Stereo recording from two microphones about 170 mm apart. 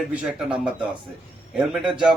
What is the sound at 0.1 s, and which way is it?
Speech, 5° right (ahead or behind).